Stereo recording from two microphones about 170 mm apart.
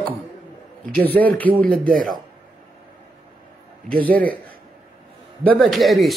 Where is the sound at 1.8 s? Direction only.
55° right (ahead or behind).